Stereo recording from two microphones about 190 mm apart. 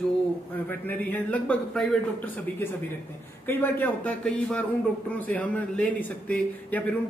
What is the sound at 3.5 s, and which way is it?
A man's voice, 10° left (ahead or behind).